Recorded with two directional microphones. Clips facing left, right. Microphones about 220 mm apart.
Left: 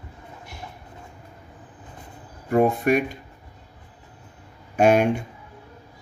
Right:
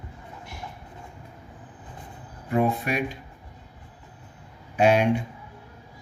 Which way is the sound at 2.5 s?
50° left (ahead or behind).